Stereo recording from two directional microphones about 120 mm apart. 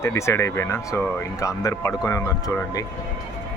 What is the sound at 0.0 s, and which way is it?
Speech, 25° left (ahead or behind).